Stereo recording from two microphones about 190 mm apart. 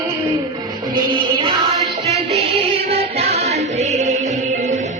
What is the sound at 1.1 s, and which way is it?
Music, 30° right (ahead or behind).